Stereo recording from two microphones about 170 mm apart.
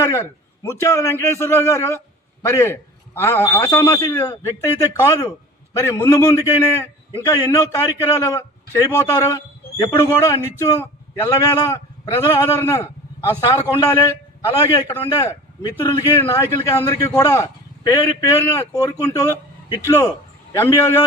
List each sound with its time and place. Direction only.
0.0 s a man's voice: 15° left (ahead or behind)